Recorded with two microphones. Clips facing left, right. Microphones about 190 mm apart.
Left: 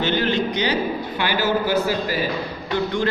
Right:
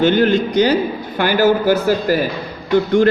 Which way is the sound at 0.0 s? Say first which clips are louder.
Right 7 dB; 50° right (ahead or behind).